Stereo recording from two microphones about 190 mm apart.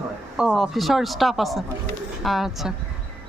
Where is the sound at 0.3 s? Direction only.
5° right (ahead or behind).